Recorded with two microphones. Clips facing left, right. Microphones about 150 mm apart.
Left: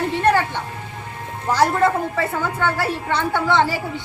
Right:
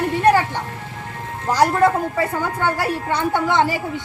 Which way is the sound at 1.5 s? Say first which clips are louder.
Right 1 dB; 15° right (ahead or behind).